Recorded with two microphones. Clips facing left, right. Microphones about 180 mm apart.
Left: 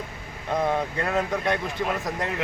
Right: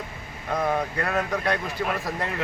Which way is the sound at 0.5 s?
20° left (ahead or behind).